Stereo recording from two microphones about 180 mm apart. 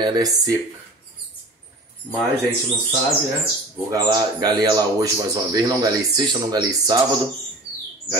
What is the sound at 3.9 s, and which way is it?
Speech, 20° right (ahead or behind).